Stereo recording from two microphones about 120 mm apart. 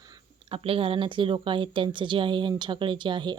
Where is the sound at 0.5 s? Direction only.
50° right (ahead or behind).